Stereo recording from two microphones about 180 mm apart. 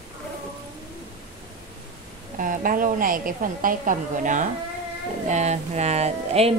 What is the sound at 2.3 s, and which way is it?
A woman's voice, 50° right (ahead or behind).